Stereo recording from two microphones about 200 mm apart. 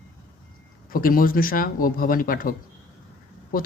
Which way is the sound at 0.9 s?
45° left (ahead or behind).